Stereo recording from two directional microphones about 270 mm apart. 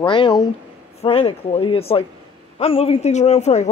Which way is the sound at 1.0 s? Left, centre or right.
Centre.